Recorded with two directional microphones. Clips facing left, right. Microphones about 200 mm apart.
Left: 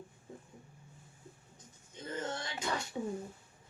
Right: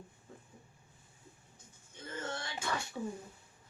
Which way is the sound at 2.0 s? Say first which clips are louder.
Left 2 dB; 20° left (ahead or behind).